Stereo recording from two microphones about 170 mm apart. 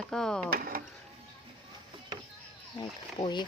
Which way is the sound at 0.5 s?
55° right (ahead or behind).